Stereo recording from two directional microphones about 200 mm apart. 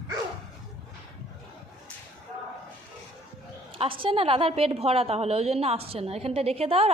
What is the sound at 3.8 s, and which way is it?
A woman's voice, 25° right (ahead or behind).